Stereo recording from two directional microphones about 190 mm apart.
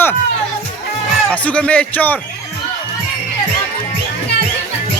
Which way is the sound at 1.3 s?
5° left (ahead or behind).